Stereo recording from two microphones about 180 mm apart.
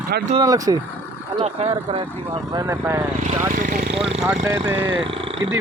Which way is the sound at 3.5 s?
50° right (ahead or behind).